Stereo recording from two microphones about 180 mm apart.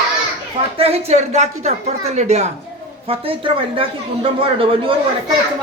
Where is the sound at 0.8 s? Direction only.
35° right (ahead or behind).